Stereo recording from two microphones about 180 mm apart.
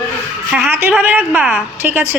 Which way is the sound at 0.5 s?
5° right (ahead or behind).